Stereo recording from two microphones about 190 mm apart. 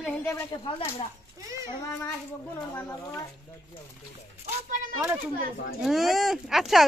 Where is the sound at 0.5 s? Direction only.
25° left (ahead or behind).